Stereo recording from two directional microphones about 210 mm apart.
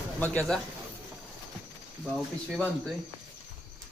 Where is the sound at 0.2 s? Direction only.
5° left (ahead or behind).